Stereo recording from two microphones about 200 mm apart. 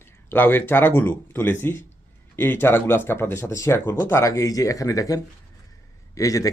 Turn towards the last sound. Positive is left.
turn(degrees=15)  # may be behind; listen again after turning